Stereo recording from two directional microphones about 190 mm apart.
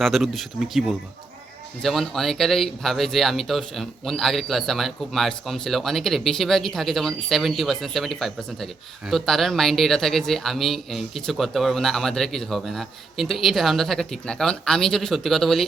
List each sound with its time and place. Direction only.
0.0 s speech: centre (ahead or behind)